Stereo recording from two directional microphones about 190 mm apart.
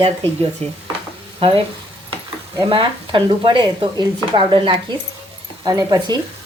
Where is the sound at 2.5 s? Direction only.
25° right (ahead or behind).